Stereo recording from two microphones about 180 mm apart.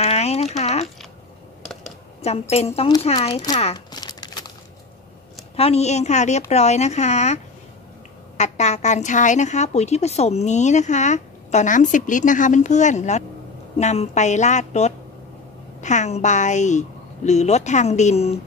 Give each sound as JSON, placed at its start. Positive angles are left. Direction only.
{"t": 0.0, "sound": "a sound", "side_deg": 35}
{"t": 2.5, "sound": "a woman's voice", "side_deg": 35}
{"t": 5.6, "sound": "a woman's voice", "side_deg": 35}
{"t": 8.4, "sound": "a woman's voice", "side_deg": 40}